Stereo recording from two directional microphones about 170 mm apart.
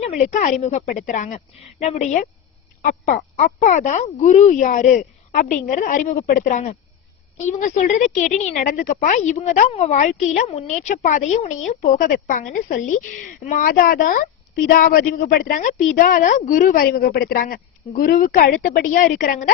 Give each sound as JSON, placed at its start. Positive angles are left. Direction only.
{"t": 0.0, "sound": "a woman's voice", "side_deg": 45}